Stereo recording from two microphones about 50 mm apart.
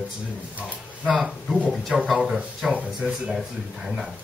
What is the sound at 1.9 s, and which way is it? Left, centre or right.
Speech, centre.